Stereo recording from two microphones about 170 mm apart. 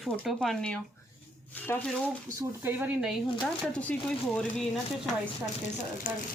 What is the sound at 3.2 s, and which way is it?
Speech, 30° left (ahead or behind).